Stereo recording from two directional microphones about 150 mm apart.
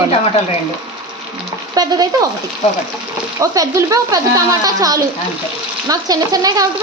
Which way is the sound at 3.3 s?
20° right (ahead or behind).